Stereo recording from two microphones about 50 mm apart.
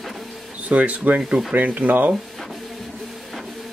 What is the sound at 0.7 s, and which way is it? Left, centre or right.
Speech, right.